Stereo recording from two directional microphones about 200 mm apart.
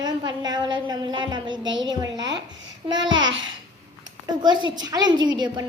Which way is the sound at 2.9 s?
70° right (ahead or behind).